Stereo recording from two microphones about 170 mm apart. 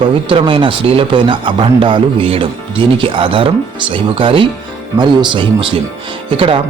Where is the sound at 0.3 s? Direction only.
30° right (ahead or behind).